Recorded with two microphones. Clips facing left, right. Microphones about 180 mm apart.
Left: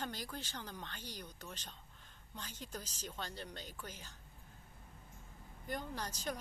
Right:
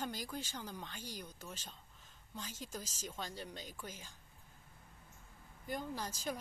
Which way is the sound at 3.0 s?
10° right (ahead or behind).